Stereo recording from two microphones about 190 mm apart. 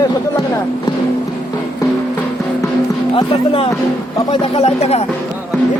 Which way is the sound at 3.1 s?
30° left (ahead or behind).